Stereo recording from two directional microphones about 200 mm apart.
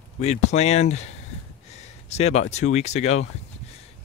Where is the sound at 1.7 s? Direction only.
35° left (ahead or behind).